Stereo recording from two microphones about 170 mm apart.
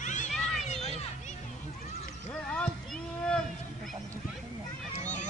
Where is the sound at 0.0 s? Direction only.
45° left (ahead or behind).